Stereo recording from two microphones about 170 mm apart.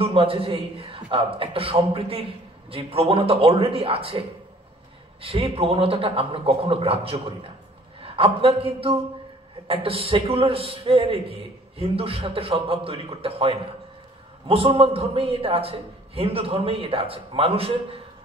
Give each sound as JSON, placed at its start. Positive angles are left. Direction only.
{"t": 0.0, "sound": "a man's voice", "side_deg": -35}
{"t": 5.2, "sound": "a man's voice", "side_deg": -35}